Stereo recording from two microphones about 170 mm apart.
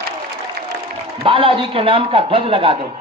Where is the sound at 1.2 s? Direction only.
30° right (ahead or behind).